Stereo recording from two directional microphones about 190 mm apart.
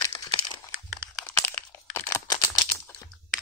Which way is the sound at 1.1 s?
10° left (ahead or behind).